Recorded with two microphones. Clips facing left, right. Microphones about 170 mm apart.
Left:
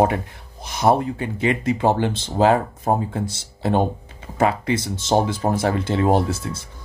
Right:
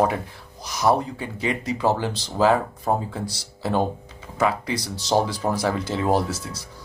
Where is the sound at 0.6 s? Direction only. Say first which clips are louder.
Left 3 dB; 55° left (ahead or behind).